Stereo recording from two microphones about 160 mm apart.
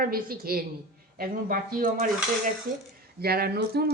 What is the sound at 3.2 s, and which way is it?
Speech, 75° right (ahead or behind).